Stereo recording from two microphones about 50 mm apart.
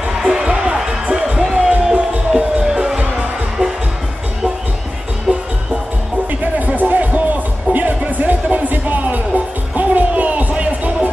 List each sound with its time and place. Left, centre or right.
0.2 s music: centre
6.4 s music: right